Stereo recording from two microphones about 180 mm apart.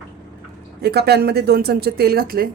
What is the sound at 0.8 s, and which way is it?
Speech, 65° right (ahead or behind).